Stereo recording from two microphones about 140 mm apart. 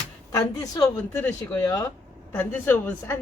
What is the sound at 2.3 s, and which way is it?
Speech, 15° left (ahead or behind).